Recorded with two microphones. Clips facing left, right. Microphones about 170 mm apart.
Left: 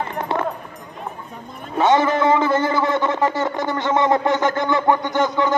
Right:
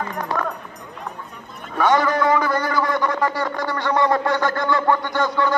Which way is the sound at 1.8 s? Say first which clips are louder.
Left 2 dB; 25° left (ahead or behind).